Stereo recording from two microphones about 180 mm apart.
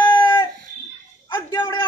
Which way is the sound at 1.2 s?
25° left (ahead or behind).